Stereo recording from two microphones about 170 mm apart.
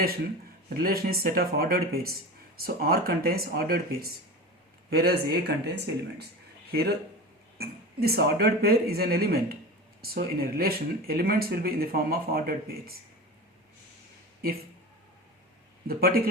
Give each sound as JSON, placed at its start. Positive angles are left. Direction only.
{"t": 1.0, "sound": "speech", "side_deg": -60}
{"t": 15.9, "sound": "speech", "side_deg": -60}